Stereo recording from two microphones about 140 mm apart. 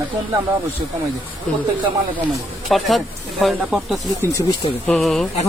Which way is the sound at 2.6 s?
Centre (ahead or behind).